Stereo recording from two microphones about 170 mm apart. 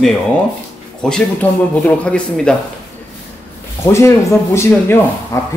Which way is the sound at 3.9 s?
15° left (ahead or behind).